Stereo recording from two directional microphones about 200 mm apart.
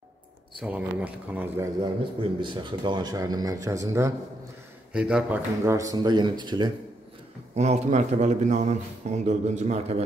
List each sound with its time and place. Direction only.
0.6 s speech: 5° right (ahead or behind)
2.4 s speech: 25° right (ahead or behind)
4.9 s speech: 5° right (ahead or behind); by 6.7 s 20° right (ahead or behind)
7.5 s a man's voice: 35° right (ahead or behind)